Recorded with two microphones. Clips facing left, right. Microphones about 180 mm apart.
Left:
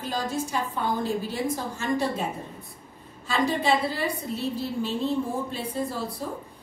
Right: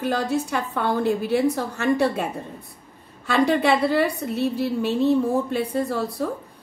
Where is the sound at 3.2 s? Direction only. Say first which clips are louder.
Right 5 dB; 65° right (ahead or behind).